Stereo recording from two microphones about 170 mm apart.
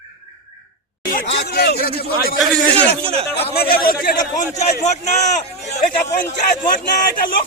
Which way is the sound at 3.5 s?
65° left (ahead or behind).